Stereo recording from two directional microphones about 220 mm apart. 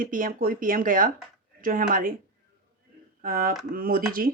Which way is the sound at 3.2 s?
40° right (ahead or behind).